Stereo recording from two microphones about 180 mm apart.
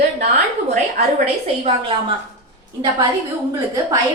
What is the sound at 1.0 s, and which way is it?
Speech, 40° right (ahead or behind).